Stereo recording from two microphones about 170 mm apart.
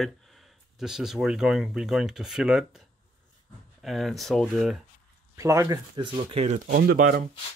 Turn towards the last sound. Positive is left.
turn(degrees=-60)  # may be behind; listen again after turning